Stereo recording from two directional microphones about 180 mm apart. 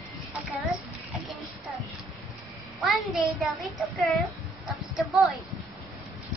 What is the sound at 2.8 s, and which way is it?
Speech, centre (ahead or behind).